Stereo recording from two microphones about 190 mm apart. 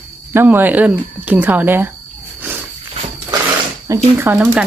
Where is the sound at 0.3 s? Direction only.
10° right (ahead or behind).